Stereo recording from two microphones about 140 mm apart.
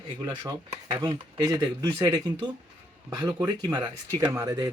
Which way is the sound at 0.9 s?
25° right (ahead or behind).